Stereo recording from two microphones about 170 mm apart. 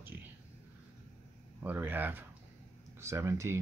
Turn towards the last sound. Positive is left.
turn(degrees=-15)  # may be behind; listen again after turning